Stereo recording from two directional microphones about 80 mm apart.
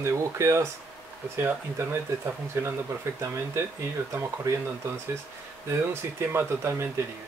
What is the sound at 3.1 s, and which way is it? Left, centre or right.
Speech, right.